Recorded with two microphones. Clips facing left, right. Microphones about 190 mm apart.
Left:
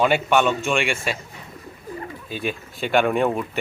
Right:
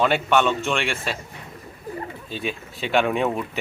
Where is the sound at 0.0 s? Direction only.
10° left (ahead or behind).